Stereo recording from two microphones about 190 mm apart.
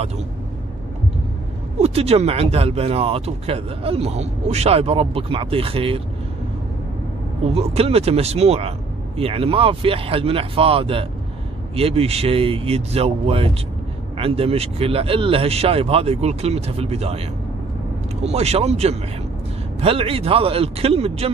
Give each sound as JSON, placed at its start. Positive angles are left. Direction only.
{"t": 1.8, "sound": "speech", "side_deg": -35}
{"t": 7.5, "sound": "speech", "side_deg": -30}
{"t": 18.2, "sound": "speech", "side_deg": -35}